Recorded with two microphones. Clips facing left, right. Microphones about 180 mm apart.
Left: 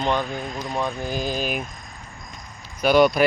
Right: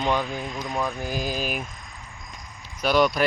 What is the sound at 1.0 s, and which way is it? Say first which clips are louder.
Speech: left 2 dB; 5° right (ahead or behind).